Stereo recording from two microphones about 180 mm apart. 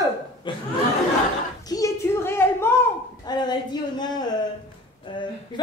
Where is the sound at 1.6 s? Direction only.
20° left (ahead or behind).